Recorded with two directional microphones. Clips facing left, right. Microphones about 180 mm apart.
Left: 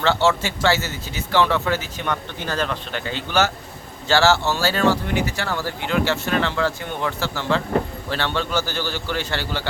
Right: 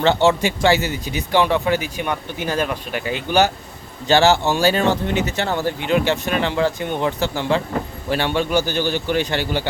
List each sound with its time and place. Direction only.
0.0 s speech: 20° right (ahead or behind)